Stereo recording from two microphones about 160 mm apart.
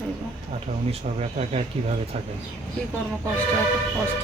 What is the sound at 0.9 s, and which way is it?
Speech, 40° right (ahead or behind).